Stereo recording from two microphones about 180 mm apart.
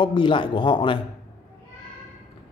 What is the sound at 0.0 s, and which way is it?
Speech, 25° left (ahead or behind).